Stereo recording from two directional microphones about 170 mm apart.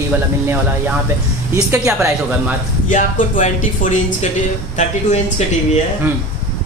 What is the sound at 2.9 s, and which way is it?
Speech, 45° left (ahead or behind).